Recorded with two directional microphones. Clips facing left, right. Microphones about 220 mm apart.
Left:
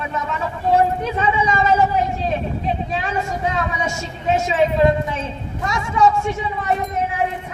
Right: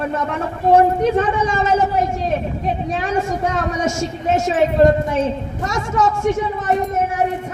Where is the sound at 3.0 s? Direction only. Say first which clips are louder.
Right 3 dB; 50° right (ahead or behind).